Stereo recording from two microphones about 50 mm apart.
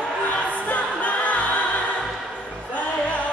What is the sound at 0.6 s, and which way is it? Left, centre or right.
Choir, left.